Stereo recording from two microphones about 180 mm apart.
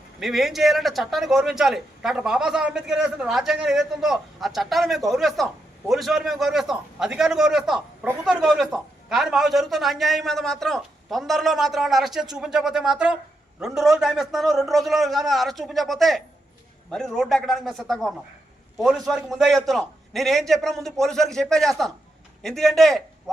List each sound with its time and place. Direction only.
0.2 s a man's voice: centre (ahead or behind)